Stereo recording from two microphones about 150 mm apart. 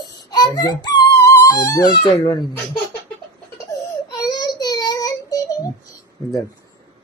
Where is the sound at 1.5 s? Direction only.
25° left (ahead or behind).